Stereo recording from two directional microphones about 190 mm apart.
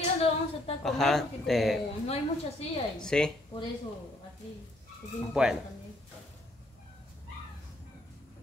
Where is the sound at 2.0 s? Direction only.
30° left (ahead or behind).